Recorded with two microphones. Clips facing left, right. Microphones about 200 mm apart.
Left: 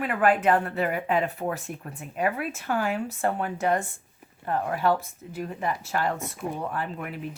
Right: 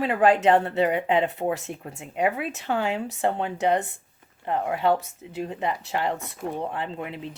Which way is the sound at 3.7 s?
65° right (ahead or behind).